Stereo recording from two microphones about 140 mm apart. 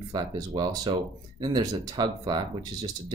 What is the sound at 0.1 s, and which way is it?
Speech, 30° right (ahead or behind).